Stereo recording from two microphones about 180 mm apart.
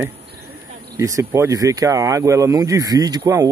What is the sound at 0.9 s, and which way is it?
Speech, 15° right (ahead or behind).